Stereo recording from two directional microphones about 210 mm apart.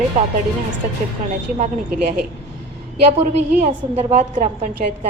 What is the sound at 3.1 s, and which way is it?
A woman's voice, 30° right (ahead or behind).